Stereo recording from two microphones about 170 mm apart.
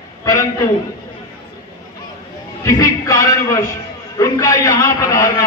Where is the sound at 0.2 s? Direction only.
20° left (ahead or behind).